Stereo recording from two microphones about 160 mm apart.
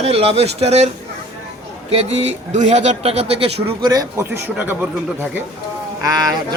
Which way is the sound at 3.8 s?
20° right (ahead or behind).